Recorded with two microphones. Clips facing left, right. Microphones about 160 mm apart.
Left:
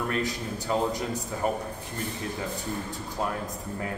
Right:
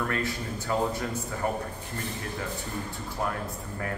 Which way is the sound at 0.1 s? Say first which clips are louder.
Left 1 dB; 20° left (ahead or behind).